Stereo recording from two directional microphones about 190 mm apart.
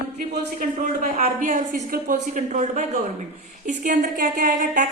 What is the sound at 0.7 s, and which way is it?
A woman's voice, 45° right (ahead or behind).